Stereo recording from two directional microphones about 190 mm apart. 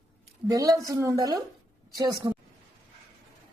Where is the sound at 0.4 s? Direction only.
20° right (ahead or behind).